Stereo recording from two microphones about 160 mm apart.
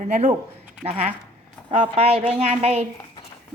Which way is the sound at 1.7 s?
35° right (ahead or behind).